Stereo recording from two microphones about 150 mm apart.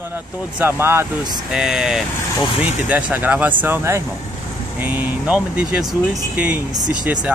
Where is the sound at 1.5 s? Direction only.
5° right (ahead or behind).